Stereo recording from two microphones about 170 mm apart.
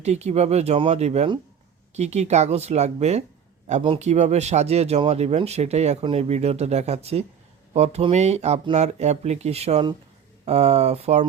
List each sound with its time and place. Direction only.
0.0 s speech: 40° right (ahead or behind)